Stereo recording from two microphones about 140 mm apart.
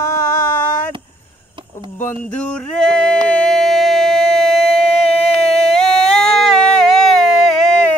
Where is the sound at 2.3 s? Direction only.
10° left (ahead or behind).